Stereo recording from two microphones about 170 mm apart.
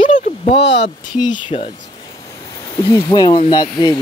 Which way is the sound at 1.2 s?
30° left (ahead or behind).